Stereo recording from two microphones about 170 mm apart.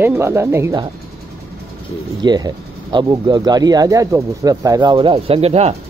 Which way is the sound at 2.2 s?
25° right (ahead or behind).